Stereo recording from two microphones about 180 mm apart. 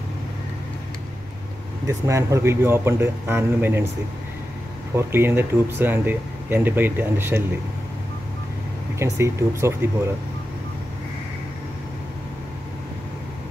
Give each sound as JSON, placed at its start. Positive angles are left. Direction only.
{"t": 1.9, "sound": "speech", "side_deg": -15}
{"t": 4.9, "sound": "speech", "side_deg": -10}
{"t": 8.9, "sound": "speech", "side_deg": -15}